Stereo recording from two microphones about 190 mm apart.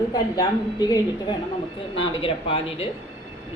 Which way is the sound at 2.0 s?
30° left (ahead or behind).